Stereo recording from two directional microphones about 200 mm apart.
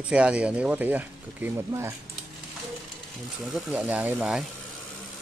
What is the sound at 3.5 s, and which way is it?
Speech, 10° right (ahead or behind).